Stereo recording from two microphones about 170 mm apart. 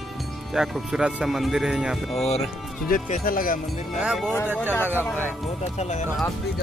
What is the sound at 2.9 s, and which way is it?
Speech, 55° left (ahead or behind).